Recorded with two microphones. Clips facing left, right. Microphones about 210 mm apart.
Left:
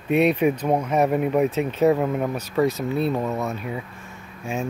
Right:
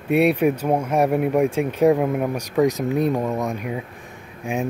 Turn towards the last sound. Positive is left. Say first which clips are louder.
# right 3 dB
turn(degrees=-15)  # may be behind; listen again after turning